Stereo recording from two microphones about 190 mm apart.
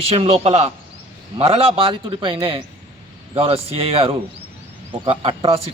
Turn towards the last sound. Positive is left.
turn(degrees=-30)  # may be behind; listen again after turning